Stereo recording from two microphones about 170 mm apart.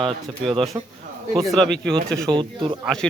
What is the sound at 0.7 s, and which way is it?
Speech, 15° right (ahead or behind).